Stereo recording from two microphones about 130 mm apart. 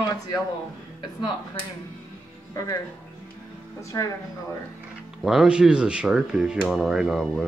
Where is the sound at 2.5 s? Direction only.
25° left (ahead or behind).